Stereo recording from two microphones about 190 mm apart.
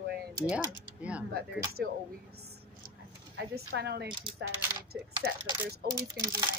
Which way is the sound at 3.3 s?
60° right (ahead or behind).